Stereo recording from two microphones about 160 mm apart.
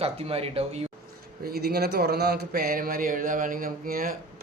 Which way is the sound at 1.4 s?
75° right (ahead or behind).